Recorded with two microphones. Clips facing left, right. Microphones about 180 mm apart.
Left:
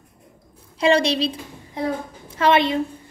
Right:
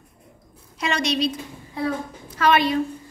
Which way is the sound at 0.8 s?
30° left (ahead or behind).